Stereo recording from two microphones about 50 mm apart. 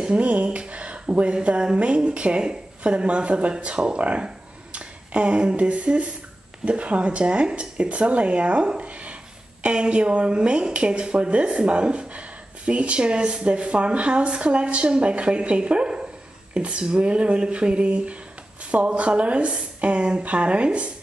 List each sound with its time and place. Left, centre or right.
0.0 s speech: right